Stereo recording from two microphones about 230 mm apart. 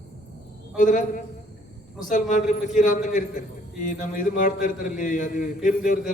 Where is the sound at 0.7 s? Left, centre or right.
Left.